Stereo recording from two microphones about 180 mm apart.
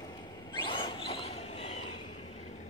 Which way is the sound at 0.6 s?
30° left (ahead or behind).